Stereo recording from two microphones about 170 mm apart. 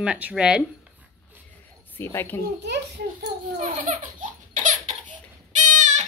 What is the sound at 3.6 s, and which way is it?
Baby laughter, 50° right (ahead or behind).